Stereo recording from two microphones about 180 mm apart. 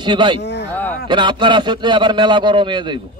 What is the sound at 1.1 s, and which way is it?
A man's voice, 25° right (ahead or behind).